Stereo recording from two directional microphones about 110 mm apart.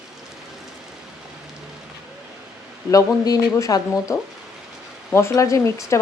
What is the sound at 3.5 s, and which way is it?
Speech, 30° left (ahead or behind).